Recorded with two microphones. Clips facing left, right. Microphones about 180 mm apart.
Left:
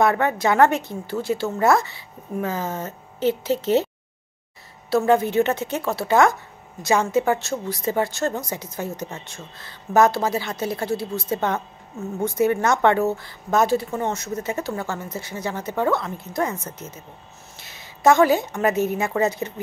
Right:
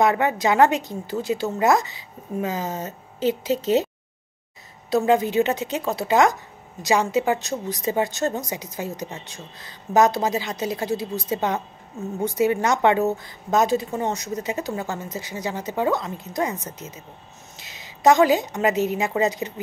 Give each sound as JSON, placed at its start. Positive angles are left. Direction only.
{"t": 0.0, "sound": "a woman's voice", "side_deg": -15}
{"t": 4.8, "sound": "a woman's voice", "side_deg": -20}